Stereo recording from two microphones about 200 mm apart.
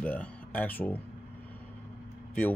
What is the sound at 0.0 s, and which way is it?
Music, 10° left (ahead or behind).